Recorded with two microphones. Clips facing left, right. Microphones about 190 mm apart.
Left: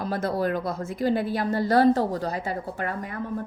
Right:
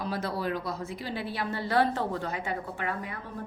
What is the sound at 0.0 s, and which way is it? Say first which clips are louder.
A woman's voice: left 6 dB; 50° left (ahead or behind).